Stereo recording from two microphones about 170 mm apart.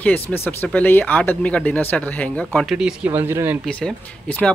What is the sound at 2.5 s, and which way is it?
Speech, centre (ahead or behind).